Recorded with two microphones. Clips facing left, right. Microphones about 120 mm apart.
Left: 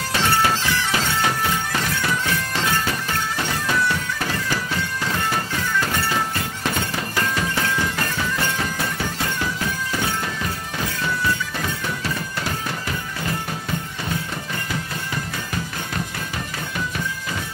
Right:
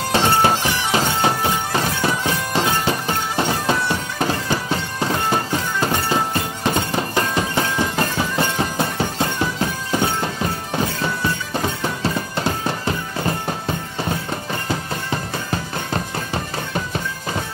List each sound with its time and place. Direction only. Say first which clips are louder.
0.1 s music: right 4 dB; 25° right (ahead or behind)